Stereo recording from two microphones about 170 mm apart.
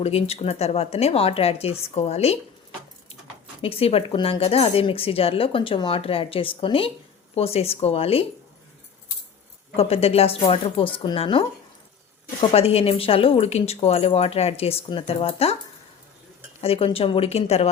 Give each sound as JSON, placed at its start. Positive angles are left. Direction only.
{"t": 0.0, "sound": "speech", "side_deg": 40}
{"t": 3.6, "sound": "speech", "side_deg": 35}
{"t": 9.7, "sound": "speech", "side_deg": 35}
{"t": 16.6, "sound": "speech", "side_deg": 35}